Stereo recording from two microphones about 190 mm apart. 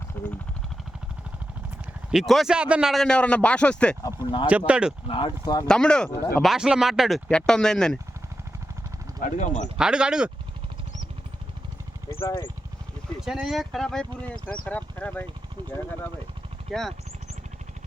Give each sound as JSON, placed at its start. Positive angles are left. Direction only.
{"t": 0.1, "sound": "a sound", "side_deg": 10}
{"t": 2.0, "sound": "speech", "side_deg": 0}
{"t": 4.0, "sound": "speech", "side_deg": 20}
{"t": 4.4, "sound": "speech", "side_deg": -5}
{"t": 5.0, "sound": "speech", "side_deg": 25}
{"t": 5.6, "sound": "speech", "side_deg": 5}
{"t": 9.2, "sound": "speech", "side_deg": 40}
{"t": 9.7, "sound": "speech", "side_deg": -5}
{"t": 13.2, "sound": "speech", "side_deg": 0}
{"t": 16.7, "sound": "speech", "side_deg": 0}